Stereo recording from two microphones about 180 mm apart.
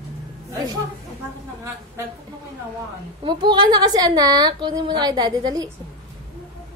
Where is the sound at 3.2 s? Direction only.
25° right (ahead or behind).